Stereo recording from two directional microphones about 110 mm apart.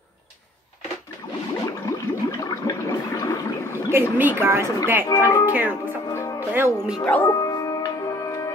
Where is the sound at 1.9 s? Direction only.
25° left (ahead or behind).